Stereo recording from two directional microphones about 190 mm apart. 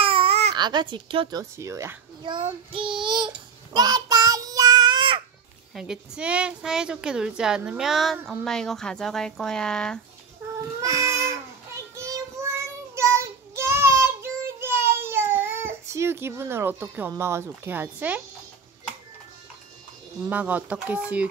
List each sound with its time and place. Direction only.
0.0 s baby cry: 30° right (ahead or behind)
0.6 s a child's voice: 25° right (ahead or behind)
1.4 s a child's voice: 15° right (ahead or behind)
3.7 s child singing: 20° right (ahead or behind)
5.8 s a woman's voice: 5° right (ahead or behind)
10.8 s child singing: 15° right (ahead or behind)
17.1 s speech: 15° right (ahead or behind)
20.2 s speech: 10° right (ahead or behind)